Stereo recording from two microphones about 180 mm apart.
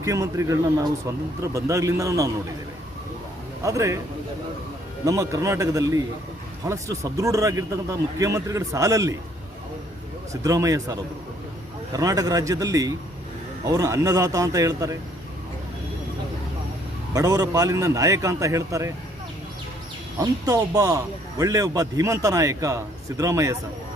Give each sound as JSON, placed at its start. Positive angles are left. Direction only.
{"t": 0.0, "sound": "speech", "side_deg": -20}
{"t": 3.6, "sound": "speech", "side_deg": -15}
{"t": 5.0, "sound": "a man's voice", "side_deg": -15}
{"t": 10.4, "sound": "a man's voice", "side_deg": -20}
{"t": 17.2, "sound": "a man's voice", "side_deg": -20}
{"t": 20.1, "sound": "a man's voice", "side_deg": -20}